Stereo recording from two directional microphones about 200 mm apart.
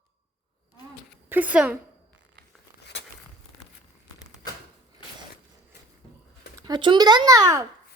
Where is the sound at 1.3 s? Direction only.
5° right (ahead or behind).